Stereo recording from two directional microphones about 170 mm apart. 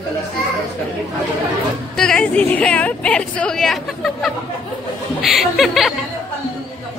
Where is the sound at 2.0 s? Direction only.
5° left (ahead or behind).